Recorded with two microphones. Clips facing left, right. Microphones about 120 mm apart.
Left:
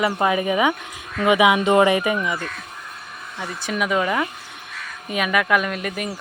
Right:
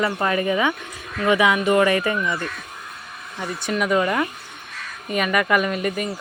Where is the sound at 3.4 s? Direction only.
Centre (ahead or behind).